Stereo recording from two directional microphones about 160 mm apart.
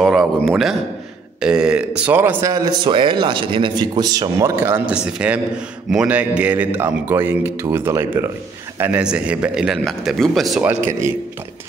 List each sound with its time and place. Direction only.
0.0 s a man's voice: centre (ahead or behind)
2.5 s a man's voice: 25° right (ahead or behind); by 10.8 s 5° right (ahead or behind)
10.9 s a man's voice: 15° right (ahead or behind)